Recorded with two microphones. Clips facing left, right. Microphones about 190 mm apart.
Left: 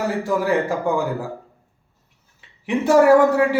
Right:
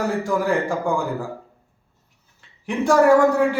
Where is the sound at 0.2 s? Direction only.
5° left (ahead or behind).